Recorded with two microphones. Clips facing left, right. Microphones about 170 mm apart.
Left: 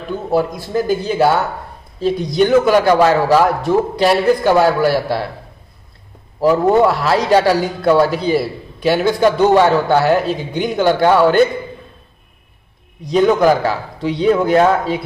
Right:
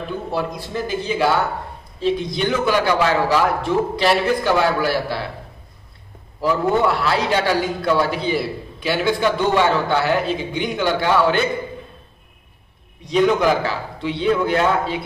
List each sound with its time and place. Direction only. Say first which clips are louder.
0.3 s a man's voice: left 10 dB; 45° left (ahead or behind)
6.4 s a man's voice: left 6 dB; 40° left (ahead or behind)
13.0 s a man's voice: left 4 dB; 40° left (ahead or behind)